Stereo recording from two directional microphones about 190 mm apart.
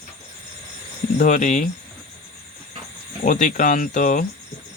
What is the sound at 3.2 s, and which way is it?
Speech, 45° left (ahead or behind).